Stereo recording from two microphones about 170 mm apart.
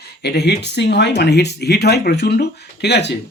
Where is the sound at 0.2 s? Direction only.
75° left (ahead or behind).